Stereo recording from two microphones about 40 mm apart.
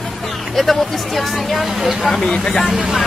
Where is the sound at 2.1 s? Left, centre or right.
Centre.